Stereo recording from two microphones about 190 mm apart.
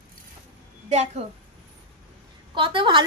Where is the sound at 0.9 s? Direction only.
35° right (ahead or behind).